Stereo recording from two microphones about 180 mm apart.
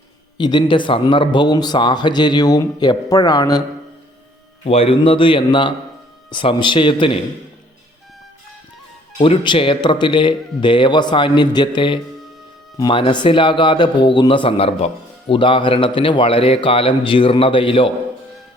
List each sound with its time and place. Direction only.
0.3 s speech: 25° left (ahead or behind)
4.6 s speech: 35° left (ahead or behind)
9.1 s speech: 30° left (ahead or behind)